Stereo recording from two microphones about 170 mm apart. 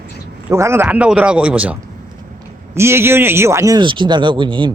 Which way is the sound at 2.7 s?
15° right (ahead or behind).